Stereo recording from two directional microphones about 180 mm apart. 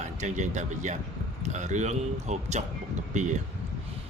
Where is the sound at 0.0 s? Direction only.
40° right (ahead or behind).